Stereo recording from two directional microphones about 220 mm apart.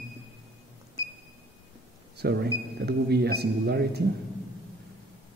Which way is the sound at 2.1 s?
45° right (ahead or behind).